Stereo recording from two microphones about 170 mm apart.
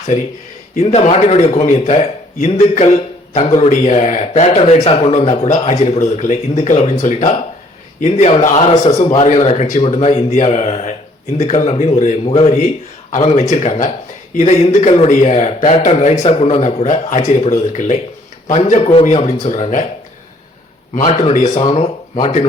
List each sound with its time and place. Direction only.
0.8 s a man's voice: 40° left (ahead or behind)
21.0 s a man's voice: 30° left (ahead or behind)
21.3 s speech: 50° left (ahead or behind)
21.6 s a man's voice: 30° left (ahead or behind)